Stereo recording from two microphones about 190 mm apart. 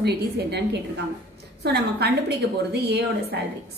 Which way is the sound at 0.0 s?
60° right (ahead or behind).